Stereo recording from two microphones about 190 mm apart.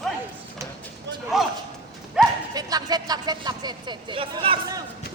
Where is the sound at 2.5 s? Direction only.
20° right (ahead or behind).